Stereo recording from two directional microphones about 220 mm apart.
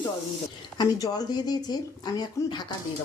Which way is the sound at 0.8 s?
15° left (ahead or behind).